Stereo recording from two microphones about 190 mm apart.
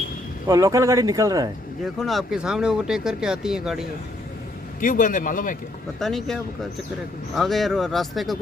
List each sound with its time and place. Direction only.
0.4 s speech: 20° right (ahead or behind)
1.8 s speech: centre (ahead or behind)
4.8 s speech: 45° left (ahead or behind)
6.0 s speech: centre (ahead or behind)